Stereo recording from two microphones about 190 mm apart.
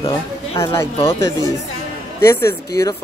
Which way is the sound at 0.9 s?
20° left (ahead or behind).